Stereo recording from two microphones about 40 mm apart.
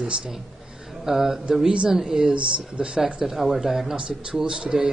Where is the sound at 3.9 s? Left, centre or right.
Right.